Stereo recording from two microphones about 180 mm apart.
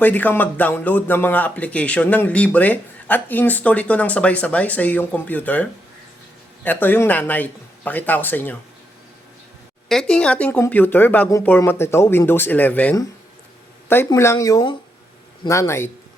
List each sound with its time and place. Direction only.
0.0 s speech: 10° left (ahead or behind)
6.7 s speech: 10° left (ahead or behind)
9.9 s speech: 5° left (ahead or behind)